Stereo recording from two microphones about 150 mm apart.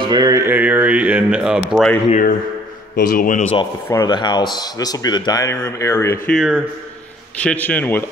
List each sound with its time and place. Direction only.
0.0 s music: 25° right (ahead or behind); by 1.6 s 5° right (ahead or behind)
2.0 s a man's voice: 55° left (ahead or behind)
3.0 s speech: 70° left (ahead or behind)
3.9 s speech: 25° left (ahead or behind)
6.3 s speech: 5° right (ahead or behind)
7.3 s a man's voice: 10° left (ahead or behind)